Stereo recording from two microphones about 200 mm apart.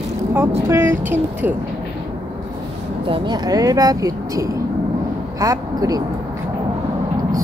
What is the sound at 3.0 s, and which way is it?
Speech, 25° right (ahead or behind).